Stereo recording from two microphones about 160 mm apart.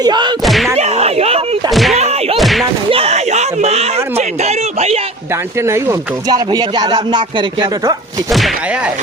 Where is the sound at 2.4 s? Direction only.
Centre (ahead or behind).